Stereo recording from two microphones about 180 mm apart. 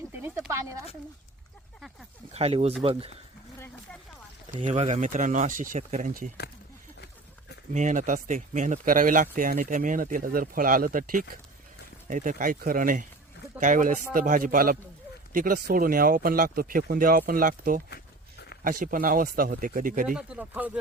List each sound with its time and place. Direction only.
0.1 s a sound: 10° right (ahead or behind)
2.3 s speech: 35° right (ahead or behind)
4.5 s speech: 40° right (ahead or behind)
7.7 s speech: 45° right (ahead or behind)
20.1 s speech: 5° right (ahead or behind)